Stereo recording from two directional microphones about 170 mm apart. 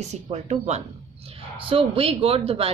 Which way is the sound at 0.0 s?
40° right (ahead or behind).